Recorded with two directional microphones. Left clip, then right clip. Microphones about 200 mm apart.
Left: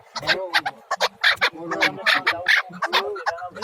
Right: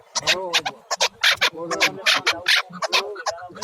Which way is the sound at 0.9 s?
30° right (ahead or behind).